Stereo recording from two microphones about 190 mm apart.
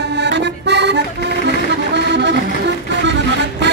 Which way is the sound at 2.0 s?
65° right (ahead or behind).